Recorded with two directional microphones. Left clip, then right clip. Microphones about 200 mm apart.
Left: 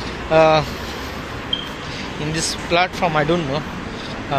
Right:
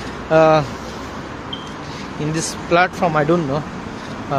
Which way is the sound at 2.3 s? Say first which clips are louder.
Right 2 dB; 35° right (ahead or behind).